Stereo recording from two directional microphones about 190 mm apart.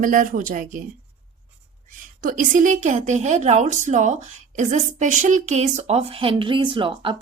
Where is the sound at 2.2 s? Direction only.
45° right (ahead or behind).